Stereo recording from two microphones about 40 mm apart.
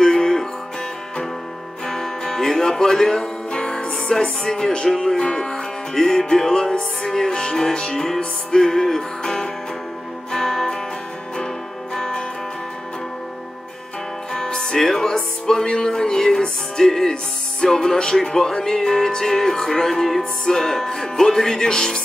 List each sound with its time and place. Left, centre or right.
0.0 s music: centre
1.9 s music: centre
14.3 s music: centre